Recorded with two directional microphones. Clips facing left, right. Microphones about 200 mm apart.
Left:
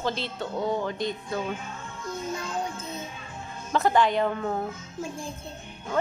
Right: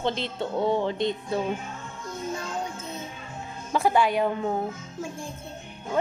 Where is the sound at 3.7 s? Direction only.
10° right (ahead or behind).